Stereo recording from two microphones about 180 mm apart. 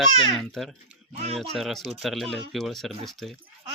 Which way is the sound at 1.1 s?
35° right (ahead or behind).